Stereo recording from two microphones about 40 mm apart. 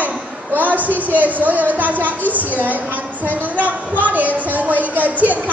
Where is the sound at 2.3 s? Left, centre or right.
Right.